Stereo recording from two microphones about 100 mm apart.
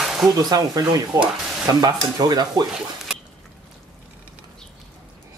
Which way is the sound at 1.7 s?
40° right (ahead or behind).